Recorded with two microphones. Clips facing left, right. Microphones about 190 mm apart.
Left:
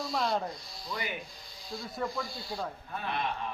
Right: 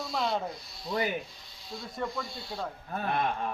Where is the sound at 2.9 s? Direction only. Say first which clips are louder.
Right 6 dB; 45° right (ahead or behind).